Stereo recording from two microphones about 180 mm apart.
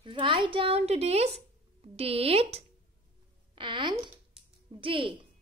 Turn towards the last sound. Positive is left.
turn(degrees=-30)  # may be behind; listen again after turning